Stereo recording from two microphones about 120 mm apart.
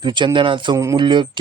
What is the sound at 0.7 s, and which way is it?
Speech, 30° right (ahead or behind).